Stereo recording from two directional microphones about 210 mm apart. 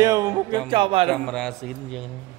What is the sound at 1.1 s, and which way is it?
Speech, 5° left (ahead or behind).